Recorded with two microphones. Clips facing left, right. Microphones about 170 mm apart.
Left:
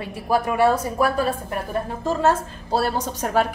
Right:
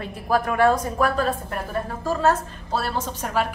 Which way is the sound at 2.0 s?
30° left (ahead or behind).